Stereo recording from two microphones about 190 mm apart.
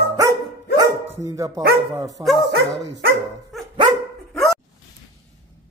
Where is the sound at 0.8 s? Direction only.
15° right (ahead or behind).